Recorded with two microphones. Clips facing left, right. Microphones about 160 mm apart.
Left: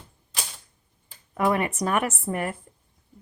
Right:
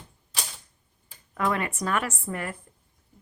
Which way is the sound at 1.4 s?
15° left (ahead or behind).